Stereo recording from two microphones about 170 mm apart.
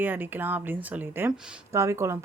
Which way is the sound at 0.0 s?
10° right (ahead or behind).